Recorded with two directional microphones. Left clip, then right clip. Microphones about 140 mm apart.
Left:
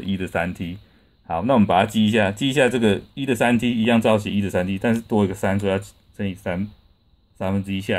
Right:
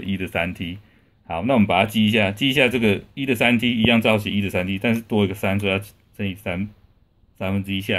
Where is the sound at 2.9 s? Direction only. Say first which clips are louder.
Even; 30° left (ahead or behind).